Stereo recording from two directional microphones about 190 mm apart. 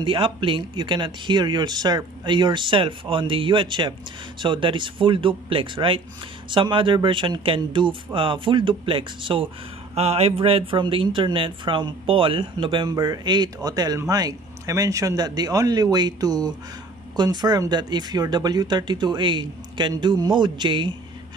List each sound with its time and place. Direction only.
0.0 s speech: 25° right (ahead or behind)